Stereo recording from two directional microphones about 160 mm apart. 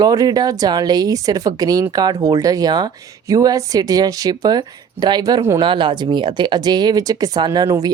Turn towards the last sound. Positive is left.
turn(degrees=-20)  # may be behind; listen again after turning